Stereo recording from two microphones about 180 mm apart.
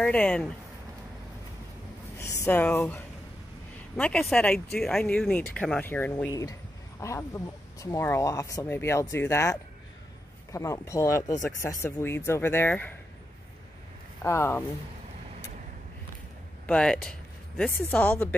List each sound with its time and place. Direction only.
0.0 s speech: 5° left (ahead or behind)
2.1 s speech: 15° left (ahead or behind)
14.2 s speech: 15° left (ahead or behind)
16.6 s speech: 5° left (ahead or behind)